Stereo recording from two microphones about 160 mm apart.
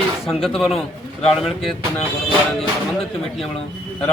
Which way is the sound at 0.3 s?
Centre (ahead or behind).